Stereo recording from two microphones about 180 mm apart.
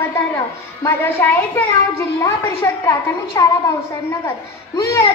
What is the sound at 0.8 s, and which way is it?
A woman's voice, 10° left (ahead or behind).